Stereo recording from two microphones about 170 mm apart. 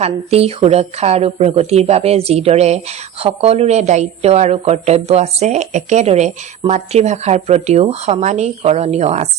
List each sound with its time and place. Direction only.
0.0 s a woman's voice: 35° right (ahead or behind)